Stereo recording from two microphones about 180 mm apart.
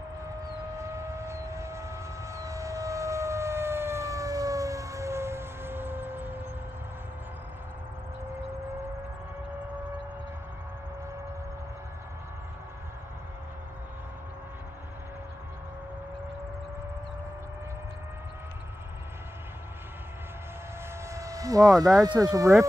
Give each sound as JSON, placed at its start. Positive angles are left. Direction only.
{"t": 0.7, "sound": "civil defense siren", "side_deg": -15}
{"t": 21.1, "sound": "vehicle", "side_deg": -20}
{"t": 22.2, "sound": "speech", "side_deg": -20}